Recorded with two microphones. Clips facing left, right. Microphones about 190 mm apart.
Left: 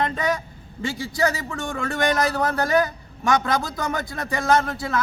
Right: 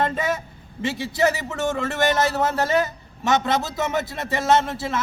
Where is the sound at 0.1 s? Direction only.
25° right (ahead or behind).